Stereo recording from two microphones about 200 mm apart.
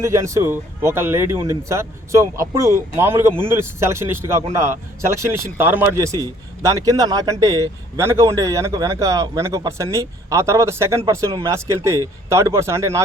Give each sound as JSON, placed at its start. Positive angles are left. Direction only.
{"t": 0.0, "sound": "a man's voice", "side_deg": -15}